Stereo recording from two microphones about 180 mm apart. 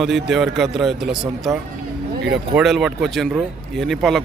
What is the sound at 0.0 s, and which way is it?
Speech, centre (ahead or behind).